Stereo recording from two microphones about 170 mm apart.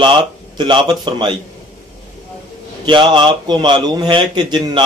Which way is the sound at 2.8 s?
30° right (ahead or behind).